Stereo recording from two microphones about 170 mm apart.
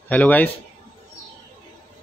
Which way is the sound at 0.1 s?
10° left (ahead or behind).